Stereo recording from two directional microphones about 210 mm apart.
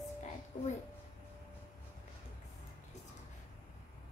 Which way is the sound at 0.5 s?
35° left (ahead or behind).